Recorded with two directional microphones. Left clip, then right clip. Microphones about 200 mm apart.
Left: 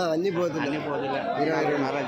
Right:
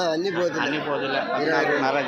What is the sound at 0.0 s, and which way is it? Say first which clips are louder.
Speech: right 2 dB; 55° left (ahead or behind).